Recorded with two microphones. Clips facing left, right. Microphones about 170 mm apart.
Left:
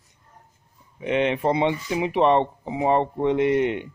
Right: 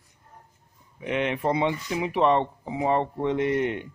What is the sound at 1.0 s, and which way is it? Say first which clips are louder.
Speech: left 4 dB; 25° left (ahead or behind).